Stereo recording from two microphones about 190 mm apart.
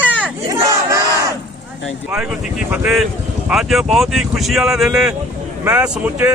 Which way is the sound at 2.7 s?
5° right (ahead or behind).